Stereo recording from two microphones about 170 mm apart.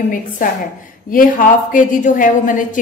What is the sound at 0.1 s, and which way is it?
A woman's voice, 50° left (ahead or behind).